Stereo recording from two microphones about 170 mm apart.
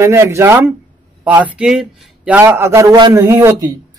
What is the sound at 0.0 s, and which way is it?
A man's voice, 15° right (ahead or behind).